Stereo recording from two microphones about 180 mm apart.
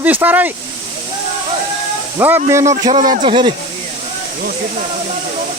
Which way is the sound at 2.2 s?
15° right (ahead or behind).